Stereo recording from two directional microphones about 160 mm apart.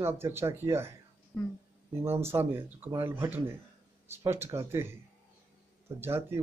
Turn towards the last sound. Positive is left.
turn(degrees=-15)  # may be behind; listen again after turning